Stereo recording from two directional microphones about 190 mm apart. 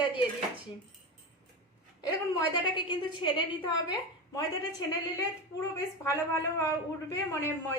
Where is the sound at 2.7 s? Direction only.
25° left (ahead or behind).